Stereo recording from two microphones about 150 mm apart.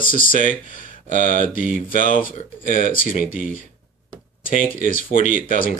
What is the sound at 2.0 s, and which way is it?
Speech, 65° left (ahead or behind).